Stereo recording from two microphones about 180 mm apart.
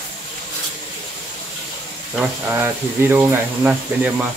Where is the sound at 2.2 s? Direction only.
10° right (ahead or behind).